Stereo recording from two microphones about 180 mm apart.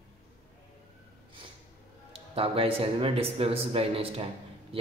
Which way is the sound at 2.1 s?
30° right (ahead or behind).